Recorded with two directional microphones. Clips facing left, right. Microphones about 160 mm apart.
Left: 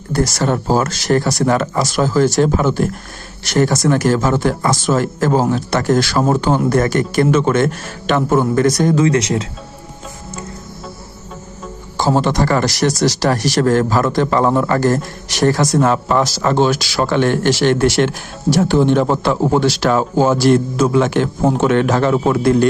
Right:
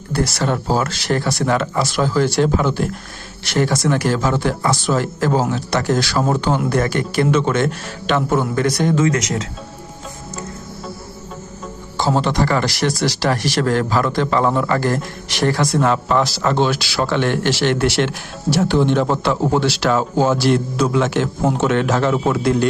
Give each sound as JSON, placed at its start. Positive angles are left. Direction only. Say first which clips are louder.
{"t": 0.1, "sound": "speech", "louder": "left 3 dB", "side_deg": 45}
{"t": 11.9, "sound": "a man's voice", "louder": "left 2 dB", "side_deg": 45}